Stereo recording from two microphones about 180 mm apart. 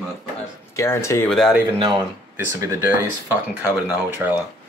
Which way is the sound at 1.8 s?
25° right (ahead or behind).